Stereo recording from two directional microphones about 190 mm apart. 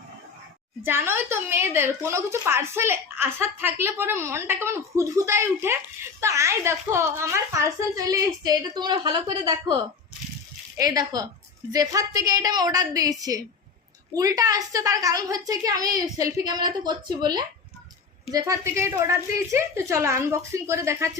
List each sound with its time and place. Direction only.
0.8 s a woman's voice: 10° right (ahead or behind)
10.8 s a child's voice: 20° right (ahead or behind)